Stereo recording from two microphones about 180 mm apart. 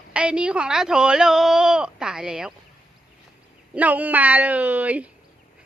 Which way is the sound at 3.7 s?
10° right (ahead or behind).